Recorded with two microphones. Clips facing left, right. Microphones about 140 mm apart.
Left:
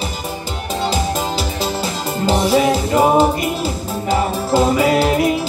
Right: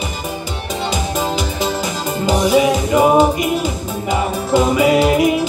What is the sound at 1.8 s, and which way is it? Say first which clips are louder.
Music: even; centre (ahead or behind).